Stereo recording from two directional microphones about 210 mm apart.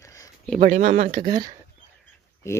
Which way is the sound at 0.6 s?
35° right (ahead or behind).